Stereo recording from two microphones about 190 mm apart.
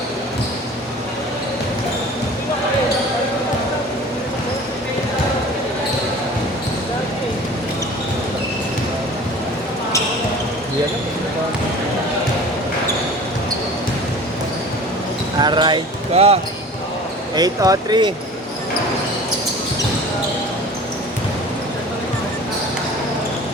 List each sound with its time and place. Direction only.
15.4 s basketball bounce: 25° right (ahead or behind)
17.3 s speech: 20° right (ahead or behind)